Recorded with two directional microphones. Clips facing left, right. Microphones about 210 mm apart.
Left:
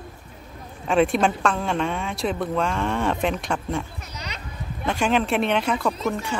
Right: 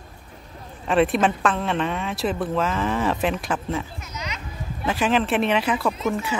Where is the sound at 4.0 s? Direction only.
35° left (ahead or behind).